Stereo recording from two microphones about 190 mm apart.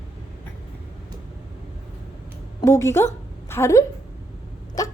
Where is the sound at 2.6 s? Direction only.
15° left (ahead or behind).